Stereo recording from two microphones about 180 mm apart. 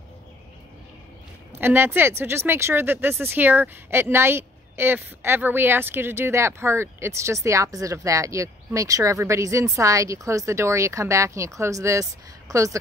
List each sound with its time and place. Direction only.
1.6 s speech: 10° right (ahead or behind)